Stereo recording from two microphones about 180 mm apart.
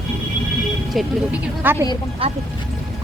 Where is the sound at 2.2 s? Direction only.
30° right (ahead or behind).